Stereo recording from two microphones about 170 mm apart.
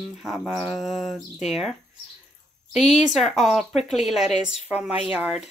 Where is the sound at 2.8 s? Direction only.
40° left (ahead or behind).